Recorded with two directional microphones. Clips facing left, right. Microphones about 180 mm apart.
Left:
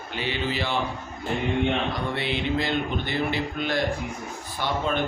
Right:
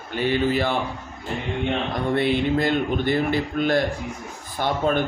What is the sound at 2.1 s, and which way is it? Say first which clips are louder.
A man's voice: right 9 dB; 50° right (ahead or behind).